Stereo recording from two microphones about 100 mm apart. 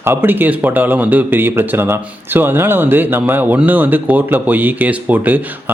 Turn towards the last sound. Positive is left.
turn(degrees=-15)  # may be behind; listen again after turning